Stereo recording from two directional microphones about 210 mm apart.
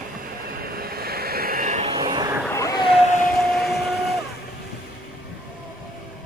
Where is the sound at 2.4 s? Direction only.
15° left (ahead or behind).